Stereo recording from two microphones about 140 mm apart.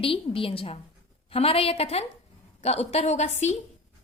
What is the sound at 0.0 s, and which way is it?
A woman's voice, 40° left (ahead or behind).